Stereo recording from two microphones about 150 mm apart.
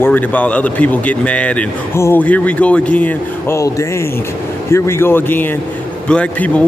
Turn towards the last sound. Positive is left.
turn(degrees=10)  # may be behind; listen again after turning